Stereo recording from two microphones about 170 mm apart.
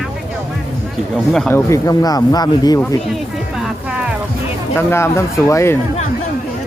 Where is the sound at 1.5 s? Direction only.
15° left (ahead or behind).